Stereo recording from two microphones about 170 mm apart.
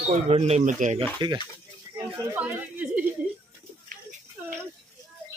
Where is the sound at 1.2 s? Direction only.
25° right (ahead or behind).